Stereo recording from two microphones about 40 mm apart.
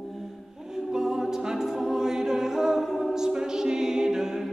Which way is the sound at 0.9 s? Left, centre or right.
Centre.